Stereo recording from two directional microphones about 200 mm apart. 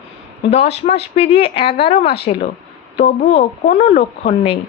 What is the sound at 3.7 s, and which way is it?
Speech, 35° left (ahead or behind).